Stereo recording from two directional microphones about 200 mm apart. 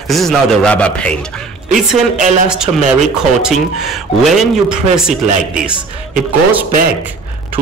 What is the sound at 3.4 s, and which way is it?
Speech, centre (ahead or behind).